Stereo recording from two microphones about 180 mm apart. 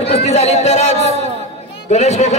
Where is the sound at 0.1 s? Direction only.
35° left (ahead or behind).